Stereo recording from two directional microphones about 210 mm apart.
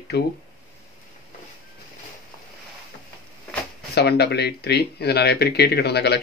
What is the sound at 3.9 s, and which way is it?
Speech, 50° left (ahead or behind).